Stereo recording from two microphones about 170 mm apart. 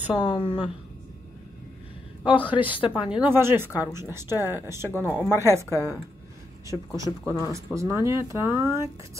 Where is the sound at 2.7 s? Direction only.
30° left (ahead or behind).